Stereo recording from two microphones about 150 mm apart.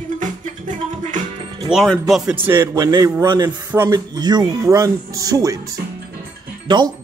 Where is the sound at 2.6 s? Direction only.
25° right (ahead or behind).